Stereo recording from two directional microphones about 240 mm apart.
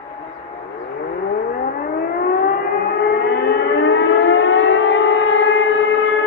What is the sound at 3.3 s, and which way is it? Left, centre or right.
Civil defense siren, left.